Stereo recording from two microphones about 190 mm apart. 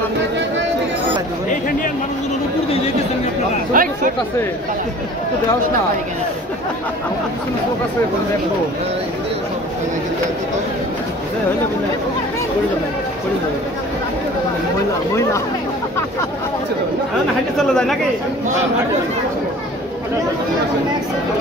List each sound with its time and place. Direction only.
3.7 s speech: 45° right (ahead or behind)
17.6 s speech: centre (ahead or behind)